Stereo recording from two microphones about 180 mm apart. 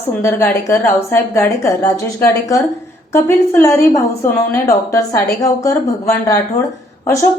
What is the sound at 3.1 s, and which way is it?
Speech, 15° left (ahead or behind).